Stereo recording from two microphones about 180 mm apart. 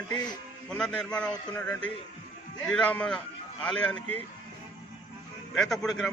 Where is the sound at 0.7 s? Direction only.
5° left (ahead or behind).